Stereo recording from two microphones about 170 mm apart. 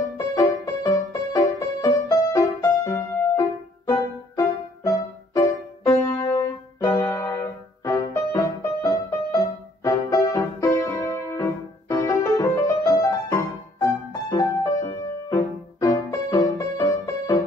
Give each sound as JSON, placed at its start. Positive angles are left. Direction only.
{"t": 0.3, "sound": "music", "side_deg": 20}